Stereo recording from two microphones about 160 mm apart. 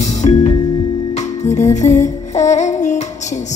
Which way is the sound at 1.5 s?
45° left (ahead or behind).